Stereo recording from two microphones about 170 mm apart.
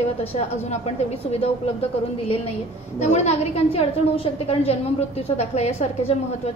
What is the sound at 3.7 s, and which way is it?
A woman's voice, 35° left (ahead or behind).